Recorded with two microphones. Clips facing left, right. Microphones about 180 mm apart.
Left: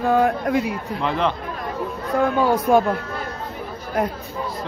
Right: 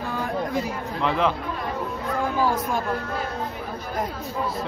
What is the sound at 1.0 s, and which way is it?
Speech, centre (ahead or behind).